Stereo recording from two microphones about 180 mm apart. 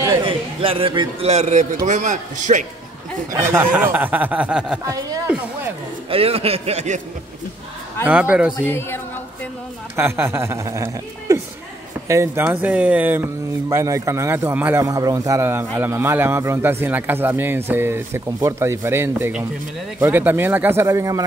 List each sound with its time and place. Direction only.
0.2 s a man's voice: 30° right (ahead or behind)
3.3 s speech: 15° right (ahead or behind)
4.8 s a woman's voice: 20° right (ahead or behind)
6.0 s speech: 30° right (ahead or behind)
8.1 s speech: 5° right (ahead or behind)
8.7 s a woman's voice: 10° left (ahead or behind)
9.9 s speech: 10° right (ahead or behind)